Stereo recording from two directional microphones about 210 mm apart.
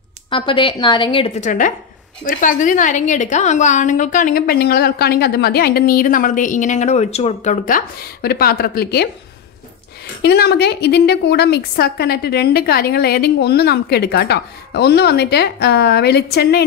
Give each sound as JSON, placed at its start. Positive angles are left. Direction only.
{"t": 0.3, "sound": "a woman's voice", "side_deg": 25}
{"t": 10.2, "sound": "a woman's voice", "side_deg": 50}